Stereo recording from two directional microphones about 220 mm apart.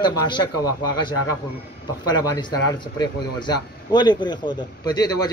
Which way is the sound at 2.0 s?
20° left (ahead or behind).